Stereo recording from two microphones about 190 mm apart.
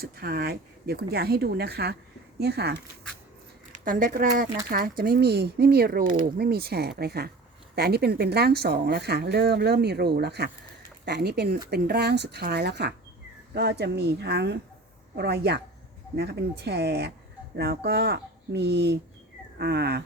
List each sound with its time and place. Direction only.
0.0 s speech: 55° right (ahead or behind)
3.8 s speech: 45° right (ahead or behind)